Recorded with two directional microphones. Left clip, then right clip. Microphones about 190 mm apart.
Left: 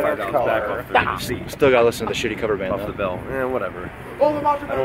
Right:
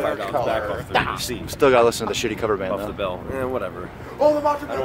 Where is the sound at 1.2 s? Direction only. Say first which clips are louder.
Even; 15° right (ahead or behind).